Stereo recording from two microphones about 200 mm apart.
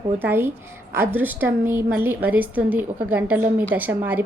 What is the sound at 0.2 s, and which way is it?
A woman's voice, 10° right (ahead or behind).